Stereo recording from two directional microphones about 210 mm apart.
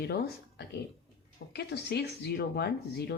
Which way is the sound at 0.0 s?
50° left (ahead or behind).